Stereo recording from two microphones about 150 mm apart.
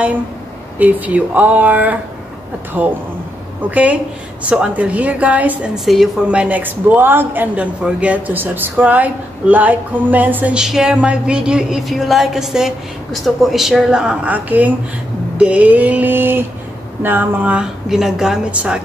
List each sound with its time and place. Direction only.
0.7 s a woman's voice: 10° right (ahead or behind)